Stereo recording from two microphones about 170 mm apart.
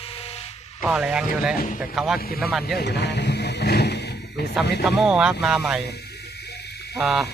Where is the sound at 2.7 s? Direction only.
80° left.